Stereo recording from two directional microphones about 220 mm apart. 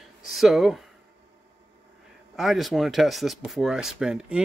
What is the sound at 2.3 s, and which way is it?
Speech, centre (ahead or behind).